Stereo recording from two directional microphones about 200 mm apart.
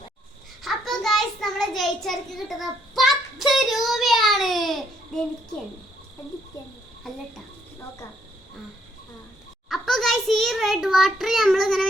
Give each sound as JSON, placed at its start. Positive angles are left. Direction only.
{"t": 0.6, "sound": "child singing", "side_deg": 0}
{"t": 7.1, "sound": "a child's voice", "side_deg": 0}
{"t": 9.6, "sound": "a sound", "side_deg": 0}